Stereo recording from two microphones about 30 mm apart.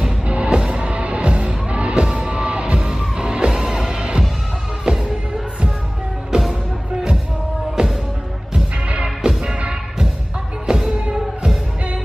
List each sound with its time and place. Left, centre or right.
0.3 s music: right
6.3 s music: right
7.8 s music: right
10.7 s music: right